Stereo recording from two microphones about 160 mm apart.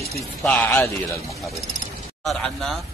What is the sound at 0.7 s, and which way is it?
Speech, 20° left (ahead or behind).